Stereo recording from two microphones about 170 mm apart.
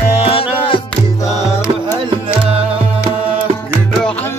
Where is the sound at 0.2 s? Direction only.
35° left (ahead or behind).